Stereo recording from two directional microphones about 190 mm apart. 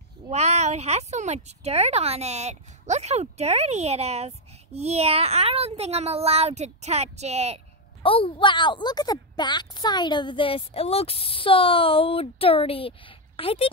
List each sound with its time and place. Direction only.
0.3 s speech: 35° right (ahead or behind)
8.0 s a woman's voice: 30° left (ahead or behind)